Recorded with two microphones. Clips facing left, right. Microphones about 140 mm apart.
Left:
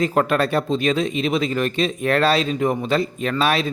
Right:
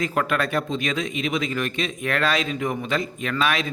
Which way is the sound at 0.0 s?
35° left (ahead or behind).